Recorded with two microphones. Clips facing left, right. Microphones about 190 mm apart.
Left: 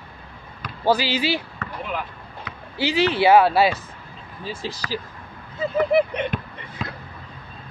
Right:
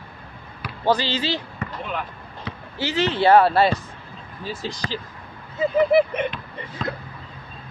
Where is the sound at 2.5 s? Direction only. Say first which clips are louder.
Right 9 dB; 30° right (ahead or behind).